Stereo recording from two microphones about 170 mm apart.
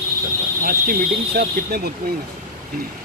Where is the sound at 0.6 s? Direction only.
60° right (ahead or behind).